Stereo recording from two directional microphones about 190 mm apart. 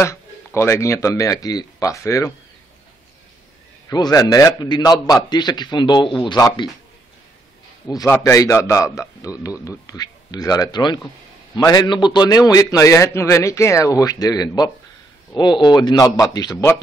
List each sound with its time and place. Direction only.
0.6 s a man's voice: 15° left (ahead or behind)
3.9 s a man's voice: 20° left (ahead or behind)
7.9 s a man's voice: 20° left (ahead or behind)